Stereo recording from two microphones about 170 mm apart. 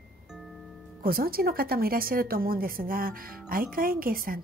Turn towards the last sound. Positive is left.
turn(degrees=-55)  # may be behind; listen again after turning